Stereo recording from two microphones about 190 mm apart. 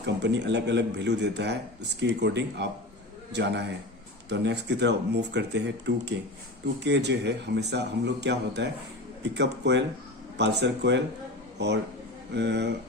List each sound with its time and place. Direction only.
0.0 s a man's voice: 65° right (ahead or behind)